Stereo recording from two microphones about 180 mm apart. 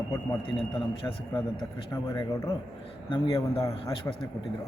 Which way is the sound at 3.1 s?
20° left (ahead or behind).